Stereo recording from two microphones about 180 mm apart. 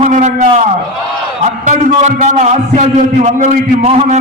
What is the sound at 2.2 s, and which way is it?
A man's voice, 40° right (ahead or behind).